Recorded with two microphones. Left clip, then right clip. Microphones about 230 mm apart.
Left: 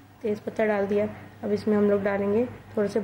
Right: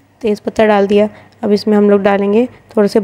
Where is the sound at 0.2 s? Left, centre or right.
Right.